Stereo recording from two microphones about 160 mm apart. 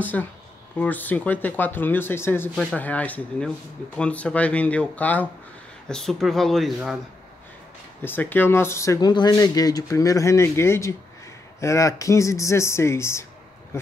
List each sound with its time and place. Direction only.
0.0 s speech: 10° left (ahead or behind)
8.0 s speech: 10° left (ahead or behind)